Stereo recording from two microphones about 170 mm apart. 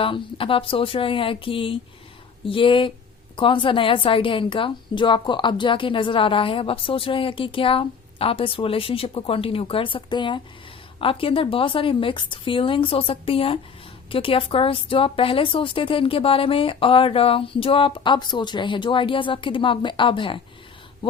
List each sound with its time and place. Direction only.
0.0 s a woman's voice: 30° left (ahead or behind)